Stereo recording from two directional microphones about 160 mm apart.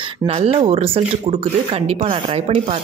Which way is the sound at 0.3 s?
35° right (ahead or behind).